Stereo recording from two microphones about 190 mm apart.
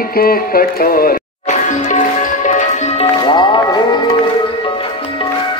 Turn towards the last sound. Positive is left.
turn(degrees=25)  # may be behind; listen again after turning